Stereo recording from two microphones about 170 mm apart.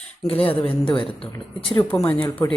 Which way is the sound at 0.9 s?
30° left (ahead or behind).